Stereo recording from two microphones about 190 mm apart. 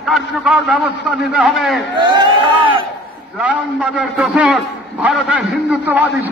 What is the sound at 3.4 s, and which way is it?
A man's voice, 5° right (ahead or behind).